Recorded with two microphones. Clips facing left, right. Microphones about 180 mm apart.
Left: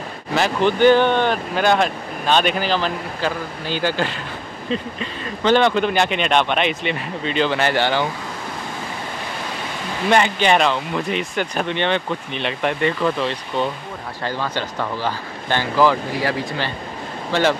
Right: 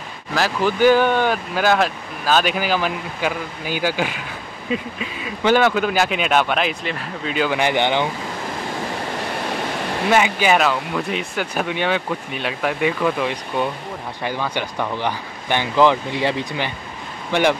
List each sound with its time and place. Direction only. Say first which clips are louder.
0.3 s speech: left 2 dB; centre (ahead or behind); by 8.1 s 20° right (ahead or behind)
10.0 s speech: left 1 dB; 5° right (ahead or behind)